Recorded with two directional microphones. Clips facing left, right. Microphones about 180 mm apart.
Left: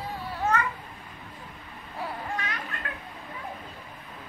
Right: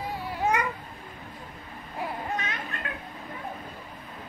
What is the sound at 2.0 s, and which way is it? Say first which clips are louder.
Babbling: right 2 dB; 20° right (ahead or behind).